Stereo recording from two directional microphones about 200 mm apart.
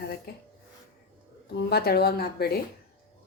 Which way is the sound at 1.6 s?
50° left (ahead or behind).